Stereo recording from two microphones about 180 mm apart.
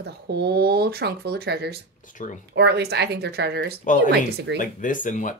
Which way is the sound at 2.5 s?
70° right (ahead or behind).